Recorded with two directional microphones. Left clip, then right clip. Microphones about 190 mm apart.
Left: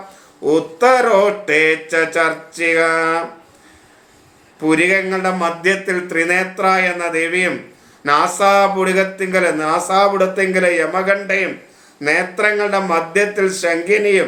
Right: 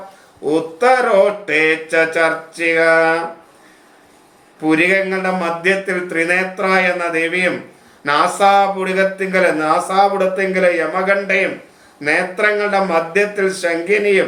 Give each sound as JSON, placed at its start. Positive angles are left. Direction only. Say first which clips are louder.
{"t": 0.4, "sound": "speech", "louder": "left 1 dB", "side_deg": 15}
{"t": 4.6, "sound": "speech", "louder": "even", "side_deg": 15}